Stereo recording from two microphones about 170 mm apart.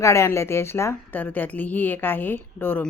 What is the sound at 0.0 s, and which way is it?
Speech, 15° left (ahead or behind).